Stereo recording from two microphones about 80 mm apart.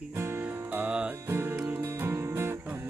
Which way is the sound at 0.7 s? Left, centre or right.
Centre.